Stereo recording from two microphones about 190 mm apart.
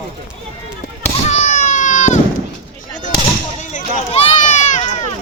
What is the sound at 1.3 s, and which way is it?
Baby cry, 40° left (ahead or behind).